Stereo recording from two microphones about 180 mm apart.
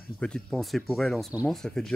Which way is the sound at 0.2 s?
5° left (ahead or behind).